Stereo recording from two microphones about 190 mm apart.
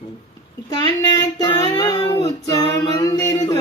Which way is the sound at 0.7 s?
20° left (ahead or behind).